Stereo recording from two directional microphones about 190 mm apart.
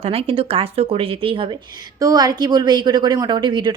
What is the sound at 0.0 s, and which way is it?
Speech, 30° right (ahead or behind).